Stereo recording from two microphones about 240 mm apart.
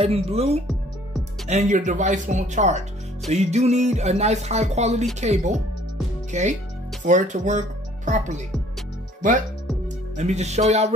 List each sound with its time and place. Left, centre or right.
0.0 s speech: right
10.1 s speech: right